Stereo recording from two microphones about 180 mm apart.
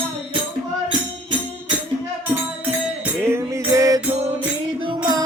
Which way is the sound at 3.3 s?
15° right (ahead or behind).